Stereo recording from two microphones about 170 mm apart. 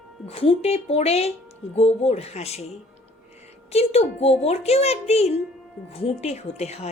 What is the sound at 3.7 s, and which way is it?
A woman's voice, 40° left (ahead or behind).